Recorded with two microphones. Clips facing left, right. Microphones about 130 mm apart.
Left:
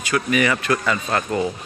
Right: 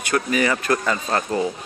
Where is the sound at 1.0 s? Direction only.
25° right (ahead or behind).